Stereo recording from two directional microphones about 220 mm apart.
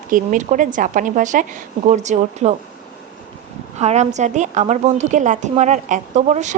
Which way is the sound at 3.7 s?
30° right (ahead or behind).